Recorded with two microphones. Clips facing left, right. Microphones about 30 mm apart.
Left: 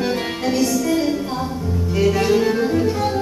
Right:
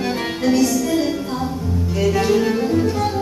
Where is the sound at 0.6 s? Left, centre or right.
Centre.